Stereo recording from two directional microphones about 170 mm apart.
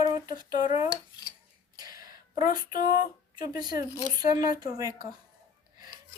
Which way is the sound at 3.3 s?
25° right (ahead or behind).